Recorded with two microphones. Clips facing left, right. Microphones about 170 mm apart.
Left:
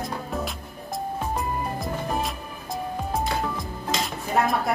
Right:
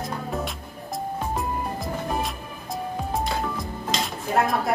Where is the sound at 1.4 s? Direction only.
Centre (ahead or behind).